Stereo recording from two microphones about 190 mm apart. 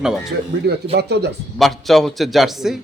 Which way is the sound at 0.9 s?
60° right (ahead or behind).